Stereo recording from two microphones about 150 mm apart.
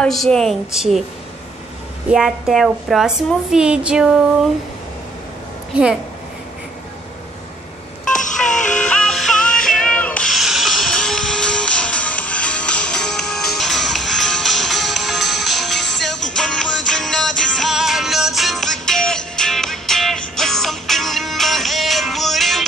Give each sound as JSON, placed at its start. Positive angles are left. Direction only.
{"t": 0.0, "sound": "a woman's voice", "side_deg": 5}
{"t": 2.0, "sound": "a woman's voice", "side_deg": -5}
{"t": 5.7, "sound": "a woman's voice", "side_deg": -10}
{"t": 8.0, "sound": "a sound", "side_deg": 60}
{"t": 8.5, "sound": "music", "side_deg": 55}
{"t": 8.7, "sound": "music", "side_deg": 5}